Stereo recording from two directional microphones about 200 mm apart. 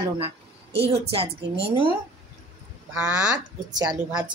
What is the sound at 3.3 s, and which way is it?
Speech, 20° right (ahead or behind).